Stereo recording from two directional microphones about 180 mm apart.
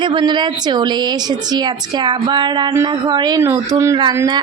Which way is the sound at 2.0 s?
25° right (ahead or behind).